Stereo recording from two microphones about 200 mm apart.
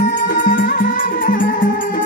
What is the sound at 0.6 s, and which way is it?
Music, 40° left (ahead or behind).